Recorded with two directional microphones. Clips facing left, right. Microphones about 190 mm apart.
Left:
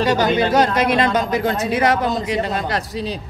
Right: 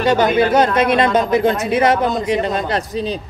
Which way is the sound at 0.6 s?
25° right (ahead or behind).